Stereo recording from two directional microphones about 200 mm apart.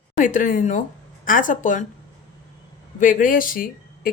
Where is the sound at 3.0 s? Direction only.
40° left (ahead or behind).